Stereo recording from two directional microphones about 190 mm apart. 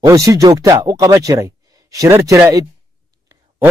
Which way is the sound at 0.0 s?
15° right (ahead or behind).